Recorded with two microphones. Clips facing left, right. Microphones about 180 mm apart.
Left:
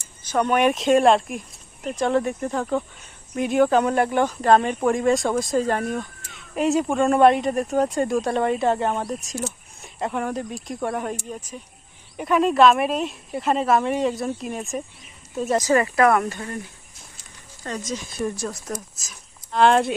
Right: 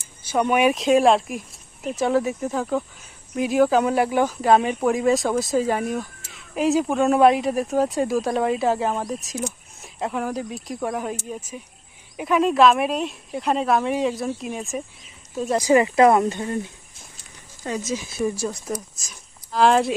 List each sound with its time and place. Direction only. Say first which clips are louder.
0.3 s speech: right 1 dB; 10° right (ahead or behind)
15.5 s speech: right 3 dB; 15° right (ahead or behind)
17.6 s speech: right 3 dB; 10° right (ahead or behind)